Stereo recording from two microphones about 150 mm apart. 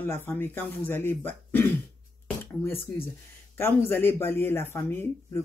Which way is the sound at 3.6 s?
15° left (ahead or behind).